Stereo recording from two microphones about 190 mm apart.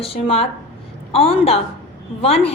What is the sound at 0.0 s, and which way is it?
A woman's voice, 30° left (ahead or behind).